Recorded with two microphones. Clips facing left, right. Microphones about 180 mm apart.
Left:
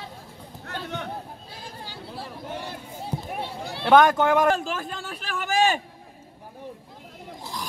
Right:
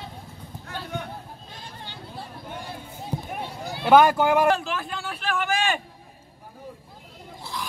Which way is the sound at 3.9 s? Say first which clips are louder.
Even; 10° right (ahead or behind).